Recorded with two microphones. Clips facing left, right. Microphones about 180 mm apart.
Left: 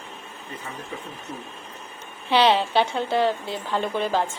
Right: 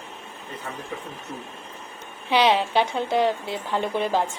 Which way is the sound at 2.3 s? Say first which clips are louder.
Left 1 dB; 10° right (ahead or behind).